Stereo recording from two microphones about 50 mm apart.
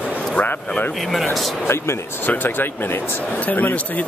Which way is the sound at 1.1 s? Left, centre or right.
Centre.